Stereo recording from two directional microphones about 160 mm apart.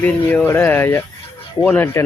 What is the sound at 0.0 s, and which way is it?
Speech, 10° left (ahead or behind).